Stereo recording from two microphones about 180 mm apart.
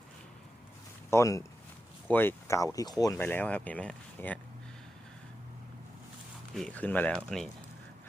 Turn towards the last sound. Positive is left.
turn(degrees=5)  # may be behind; listen again after turning